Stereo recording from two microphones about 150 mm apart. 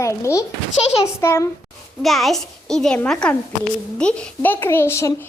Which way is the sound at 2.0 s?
Centre (ahead or behind).